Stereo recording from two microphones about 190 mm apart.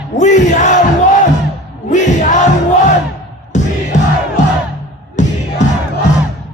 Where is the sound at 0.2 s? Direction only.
40° left (ahead or behind).